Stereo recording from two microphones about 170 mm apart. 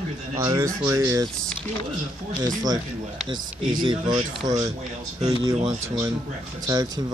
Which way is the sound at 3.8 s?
25° right (ahead or behind).